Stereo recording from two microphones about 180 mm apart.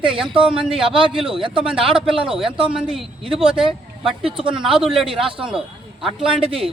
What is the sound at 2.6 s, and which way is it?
A man's voice, 5° right (ahead or behind).